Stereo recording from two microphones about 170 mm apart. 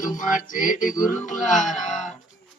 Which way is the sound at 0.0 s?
50° left (ahead or behind).